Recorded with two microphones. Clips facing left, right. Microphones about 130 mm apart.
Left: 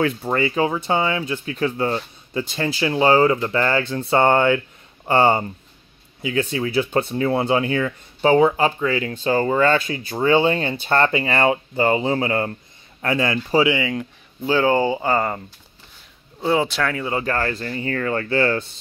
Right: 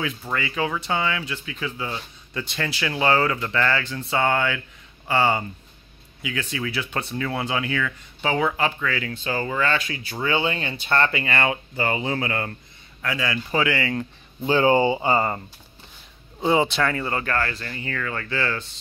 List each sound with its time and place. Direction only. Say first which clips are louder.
0.2 s speech: left 6 dB; 35° left (ahead or behind)
2.3 s speech: left 5 dB; 30° left (ahead or behind); by 5.4 s 45° left (ahead or behind)
6.2 s speech: left 7 dB; 35° left (ahead or behind)
9.1 s speech: left 7 dB; 40° left (ahead or behind)
13.0 s speech: left 6 dB; 40° left (ahead or behind)
13.7 s speech: left 2 dB; 15° left (ahead or behind)
14.5 s speech: even; 15° right (ahead or behind)
16.3 s speech: even; centre (ahead or behind)
17.3 s speech: left 3 dB; 35° left (ahead or behind)